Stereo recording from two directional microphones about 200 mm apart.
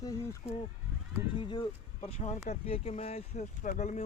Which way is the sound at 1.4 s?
25° left (ahead or behind).